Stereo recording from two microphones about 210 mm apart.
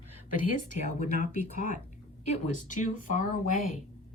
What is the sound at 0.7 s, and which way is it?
A woman's voice, 35° left (ahead or behind).